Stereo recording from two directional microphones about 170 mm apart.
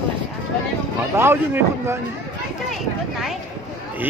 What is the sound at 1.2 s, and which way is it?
Speech, 15° right (ahead or behind).